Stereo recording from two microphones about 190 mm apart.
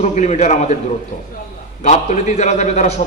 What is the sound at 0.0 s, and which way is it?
Speech, 40° left (ahead or behind).